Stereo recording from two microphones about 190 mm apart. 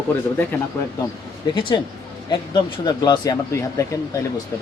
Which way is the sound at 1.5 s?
25° left (ahead or behind).